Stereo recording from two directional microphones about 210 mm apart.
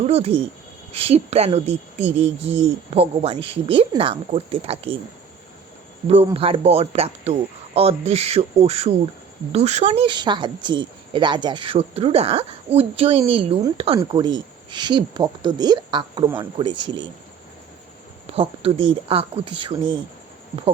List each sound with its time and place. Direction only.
0.0 s speech: 30° right (ahead or behind)
6.1 s speech: 25° right (ahead or behind)
18.3 s speech: 25° right (ahead or behind)